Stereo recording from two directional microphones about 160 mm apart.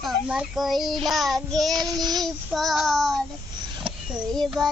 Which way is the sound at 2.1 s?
Centre (ahead or behind).